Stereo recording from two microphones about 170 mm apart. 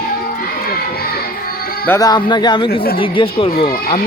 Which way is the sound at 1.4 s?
60° left (ahead or behind).